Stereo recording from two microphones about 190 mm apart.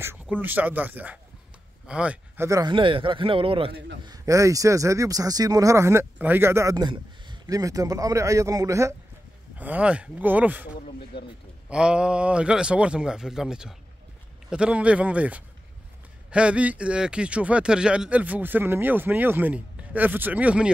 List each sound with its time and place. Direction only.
0.0 s a man's voice: 10° right (ahead or behind)
11.1 s a man's voice: 60° left (ahead or behind)
11.7 s a man's voice: 5° right (ahead or behind)